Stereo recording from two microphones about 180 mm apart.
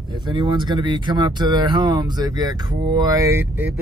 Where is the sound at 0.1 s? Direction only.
25° right (ahead or behind).